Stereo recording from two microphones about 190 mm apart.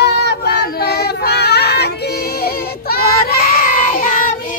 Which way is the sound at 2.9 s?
50° left (ahead or behind).